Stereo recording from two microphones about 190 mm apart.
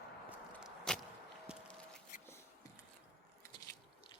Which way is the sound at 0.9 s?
5° left (ahead or behind).